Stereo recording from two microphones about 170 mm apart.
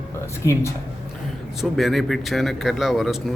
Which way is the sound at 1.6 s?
Centre (ahead or behind).